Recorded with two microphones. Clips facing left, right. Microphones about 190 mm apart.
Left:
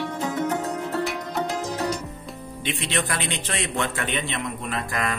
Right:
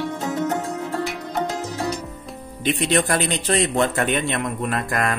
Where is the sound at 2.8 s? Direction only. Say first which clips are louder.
Right 8 dB; 45° right (ahead or behind).